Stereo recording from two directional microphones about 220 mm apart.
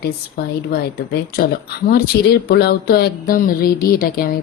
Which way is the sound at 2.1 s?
50° left (ahead or behind).